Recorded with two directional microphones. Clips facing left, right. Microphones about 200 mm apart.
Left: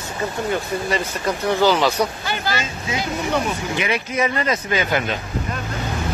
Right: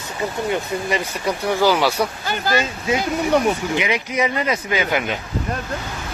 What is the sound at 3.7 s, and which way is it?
A man's voice, 15° right (ahead or behind).